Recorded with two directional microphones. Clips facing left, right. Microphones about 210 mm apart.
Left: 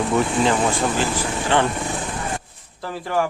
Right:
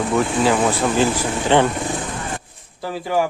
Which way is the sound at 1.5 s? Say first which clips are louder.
Right 4 dB; 15° right (ahead or behind).